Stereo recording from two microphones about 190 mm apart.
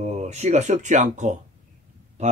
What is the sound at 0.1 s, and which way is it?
Speech, 35° right (ahead or behind).